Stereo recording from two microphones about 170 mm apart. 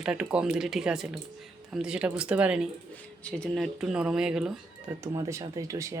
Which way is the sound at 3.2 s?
5° left (ahead or behind).